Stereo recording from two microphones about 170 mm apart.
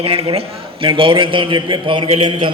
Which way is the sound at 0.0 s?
30° right (ahead or behind).